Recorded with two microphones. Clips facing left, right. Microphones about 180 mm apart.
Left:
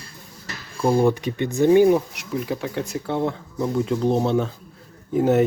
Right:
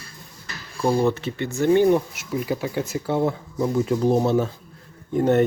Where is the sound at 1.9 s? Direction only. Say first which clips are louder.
Left 1 dB; centre (ahead or behind).